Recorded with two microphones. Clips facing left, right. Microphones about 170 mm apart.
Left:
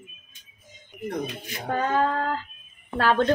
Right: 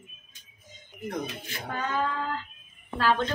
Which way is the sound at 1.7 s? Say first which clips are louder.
Left 6 dB; 45° left (ahead or behind).